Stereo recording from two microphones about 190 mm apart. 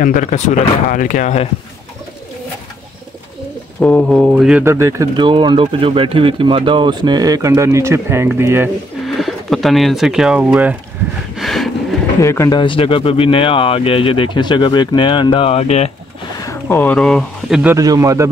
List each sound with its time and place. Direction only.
0.0 s speech: 40° left (ahead or behind)
3.8 s speech: 5° left (ahead or behind); by 8.6 s 10° right (ahead or behind)
9.0 s speech: centre (ahead or behind)
11.3 s a sound: centre (ahead or behind)
12.2 s speech: 15° left (ahead or behind)
12.5 s speech: 25° left (ahead or behind)
16.3 s speech: 15° left (ahead or behind); by 17.7 s 5° right (ahead or behind)
17.7 s speech: 15° right (ahead or behind)